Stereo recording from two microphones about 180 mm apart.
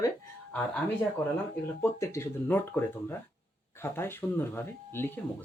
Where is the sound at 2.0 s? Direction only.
15° left (ahead or behind).